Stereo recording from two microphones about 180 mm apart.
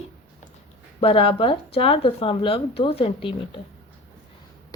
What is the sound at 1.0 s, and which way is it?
Speech, 30° left (ahead or behind).